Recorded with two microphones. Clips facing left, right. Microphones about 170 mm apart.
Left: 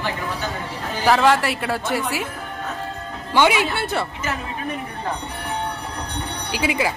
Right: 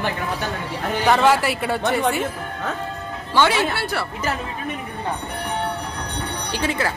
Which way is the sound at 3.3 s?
15° left (ahead or behind).